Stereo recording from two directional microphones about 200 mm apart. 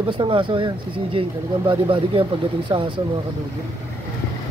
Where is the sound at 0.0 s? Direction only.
25° right (ahead or behind).